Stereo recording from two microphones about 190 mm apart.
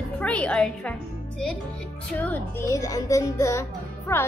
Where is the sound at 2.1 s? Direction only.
10° left (ahead or behind).